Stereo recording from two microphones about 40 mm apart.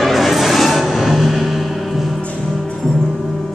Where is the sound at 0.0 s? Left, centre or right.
Centre.